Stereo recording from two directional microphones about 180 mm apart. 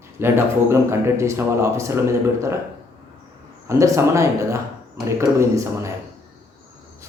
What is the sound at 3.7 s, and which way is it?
Speech, 15° right (ahead or behind).